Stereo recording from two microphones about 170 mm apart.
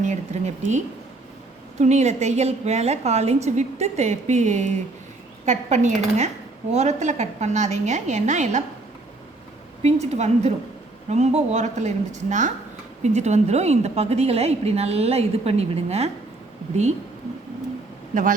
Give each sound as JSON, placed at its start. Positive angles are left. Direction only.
{"t": 0.0, "sound": "a woman's voice", "side_deg": -45}
{"t": 1.8, "sound": "a woman's voice", "side_deg": -40}
{"t": 9.8, "sound": "a woman's voice", "side_deg": -40}
{"t": 18.1, "sound": "speech", "side_deg": -50}